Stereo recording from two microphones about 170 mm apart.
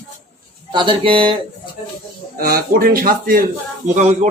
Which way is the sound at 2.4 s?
60° right (ahead or behind).